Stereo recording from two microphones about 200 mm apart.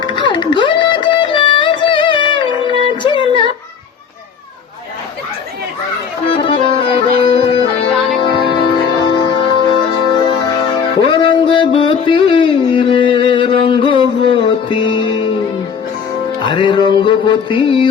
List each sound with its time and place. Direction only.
0.0 s music: 25° left (ahead or behind)
3.0 s a sound: 25° left (ahead or behind)
6.3 s accordion: 25° left (ahead or behind)
8.2 s music: 25° left (ahead or behind)
16.4 s music: 25° left (ahead or behind)